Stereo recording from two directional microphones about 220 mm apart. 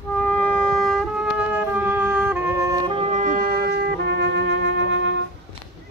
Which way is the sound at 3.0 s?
35° right (ahead or behind).